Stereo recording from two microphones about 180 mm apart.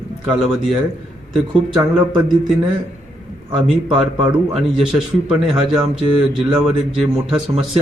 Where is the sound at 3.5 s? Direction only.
5° right (ahead or behind).